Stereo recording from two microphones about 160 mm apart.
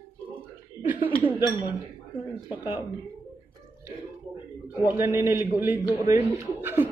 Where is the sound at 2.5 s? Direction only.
10° right (ahead or behind).